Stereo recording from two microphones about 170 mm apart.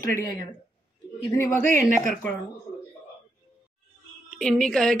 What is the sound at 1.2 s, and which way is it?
Speech, 20° left (ahead or behind).